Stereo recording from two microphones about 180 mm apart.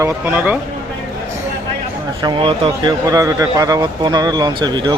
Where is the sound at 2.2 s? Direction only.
30° right (ahead or behind).